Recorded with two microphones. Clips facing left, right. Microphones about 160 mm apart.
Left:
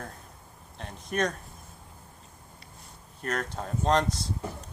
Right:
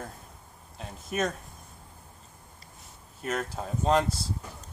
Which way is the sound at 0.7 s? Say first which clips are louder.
Left 1 dB; 5° right (ahead or behind).